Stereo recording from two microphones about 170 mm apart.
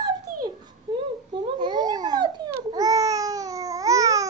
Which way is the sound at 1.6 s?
25° right (ahead or behind).